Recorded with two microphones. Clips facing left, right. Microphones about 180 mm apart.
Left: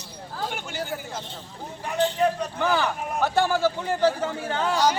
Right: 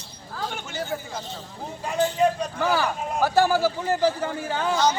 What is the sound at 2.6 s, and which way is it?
A man's voice, 5° right (ahead or behind).